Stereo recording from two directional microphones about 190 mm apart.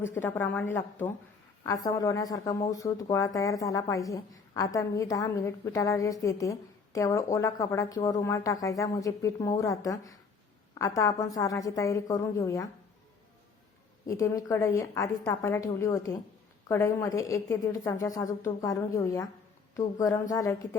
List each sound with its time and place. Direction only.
0.0 s speech: 10° left (ahead or behind)
14.1 s speech: 15° left (ahead or behind)